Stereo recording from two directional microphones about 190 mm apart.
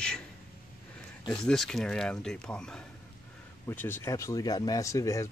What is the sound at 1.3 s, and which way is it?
Speech, 5° left (ahead or behind).